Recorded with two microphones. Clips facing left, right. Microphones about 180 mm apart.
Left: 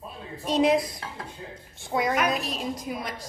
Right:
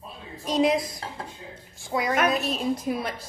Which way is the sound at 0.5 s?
Centre (ahead or behind).